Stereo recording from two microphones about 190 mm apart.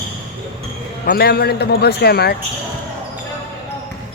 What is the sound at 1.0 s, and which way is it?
A man's voice, 55° left (ahead or behind).